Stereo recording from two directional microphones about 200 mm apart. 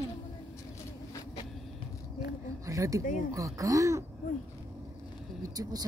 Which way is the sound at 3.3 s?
15° right (ahead or behind).